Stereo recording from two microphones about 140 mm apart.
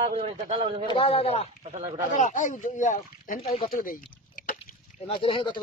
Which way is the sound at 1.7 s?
55° right (ahead or behind).